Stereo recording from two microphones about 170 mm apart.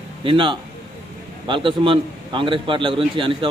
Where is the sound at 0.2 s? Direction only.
30° right (ahead or behind).